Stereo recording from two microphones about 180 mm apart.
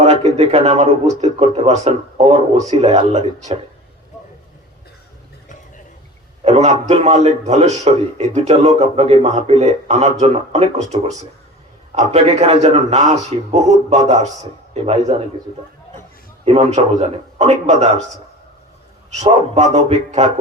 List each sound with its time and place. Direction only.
0.0 s speech: 35° right (ahead or behind)
6.4 s speech: 35° right (ahead or behind)
16.4 s speech: 35° right (ahead or behind)
19.2 s speech: 40° right (ahead or behind)